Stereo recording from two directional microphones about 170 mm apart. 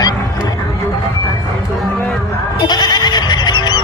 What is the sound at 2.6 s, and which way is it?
Goat, 25° left (ahead or behind).